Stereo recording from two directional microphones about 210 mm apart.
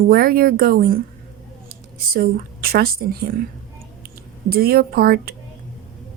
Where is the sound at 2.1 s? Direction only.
45° right (ahead or behind).